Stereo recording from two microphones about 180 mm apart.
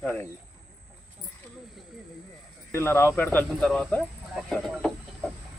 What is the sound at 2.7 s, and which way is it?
A man's voice, 15° left (ahead or behind).